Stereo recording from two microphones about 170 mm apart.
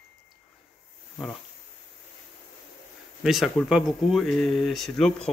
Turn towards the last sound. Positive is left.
turn(degrees=5)  # may be behind; listen again after turning